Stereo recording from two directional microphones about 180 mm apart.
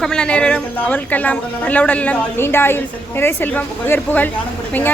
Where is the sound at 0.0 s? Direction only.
5° left (ahead or behind).